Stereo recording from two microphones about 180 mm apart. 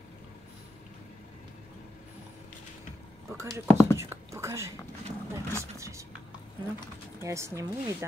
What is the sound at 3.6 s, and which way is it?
Speech, 10° left (ahead or behind).